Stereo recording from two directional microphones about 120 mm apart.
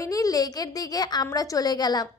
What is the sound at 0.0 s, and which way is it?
A woman's voice, 30° left (ahead or behind).